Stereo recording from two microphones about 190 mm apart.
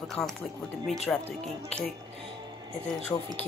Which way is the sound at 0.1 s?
Centre (ahead or behind).